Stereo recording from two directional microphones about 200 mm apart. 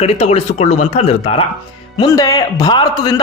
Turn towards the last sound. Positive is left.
turn(degrees=20)  # may be behind; listen again after turning